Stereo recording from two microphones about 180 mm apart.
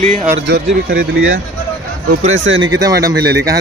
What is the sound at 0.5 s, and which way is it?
Speech, 65° right (ahead or behind).